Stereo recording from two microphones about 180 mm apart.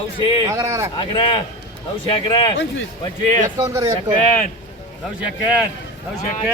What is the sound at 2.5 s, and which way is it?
Speech, 90° left.